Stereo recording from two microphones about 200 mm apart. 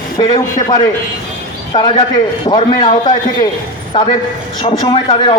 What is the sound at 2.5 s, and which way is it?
Speech, 25° left (ahead or behind).